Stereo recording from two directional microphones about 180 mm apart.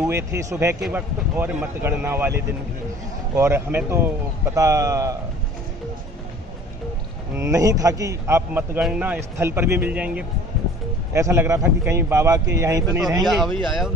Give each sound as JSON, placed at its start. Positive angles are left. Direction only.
{"t": 0.0, "sound": "speech", "side_deg": -15}
{"t": 7.3, "sound": "speech", "side_deg": -15}
{"t": 13.3, "sound": "speech", "side_deg": 0}